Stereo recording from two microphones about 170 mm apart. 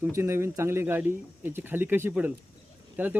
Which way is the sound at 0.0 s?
15° right (ahead or behind).